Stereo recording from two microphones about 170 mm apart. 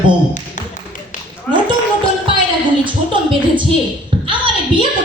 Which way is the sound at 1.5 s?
5° left (ahead or behind).